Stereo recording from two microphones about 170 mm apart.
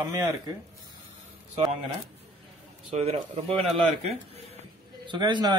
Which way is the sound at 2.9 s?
35° right (ahead or behind).